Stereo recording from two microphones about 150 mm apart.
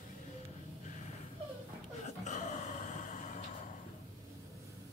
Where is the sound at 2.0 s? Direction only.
50° left (ahead or behind).